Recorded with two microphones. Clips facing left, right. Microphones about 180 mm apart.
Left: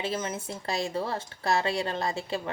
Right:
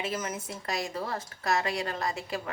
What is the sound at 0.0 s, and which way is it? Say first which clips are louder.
Speech: left 2 dB; 30° left (ahead or behind).